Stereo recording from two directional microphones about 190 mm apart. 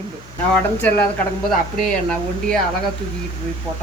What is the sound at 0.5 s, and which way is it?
Speech, 10° left (ahead or behind).